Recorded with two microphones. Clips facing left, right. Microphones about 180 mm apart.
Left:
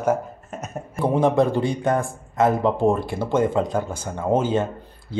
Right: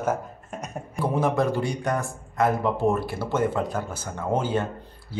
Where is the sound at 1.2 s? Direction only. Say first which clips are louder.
Left 5 dB; 25° left (ahead or behind).